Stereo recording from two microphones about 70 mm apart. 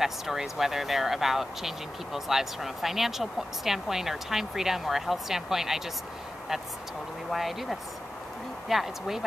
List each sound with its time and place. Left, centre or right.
0.0 s speech: centre
7.2 s speech: centre